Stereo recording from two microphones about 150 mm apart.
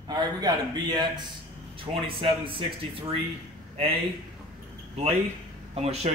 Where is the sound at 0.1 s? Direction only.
25° right (ahead or behind).